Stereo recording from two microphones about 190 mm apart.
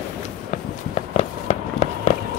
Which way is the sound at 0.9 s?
35° left (ahead or behind).